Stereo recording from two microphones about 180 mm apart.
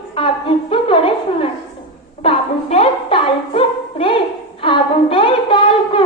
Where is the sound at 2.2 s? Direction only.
35° left (ahead or behind).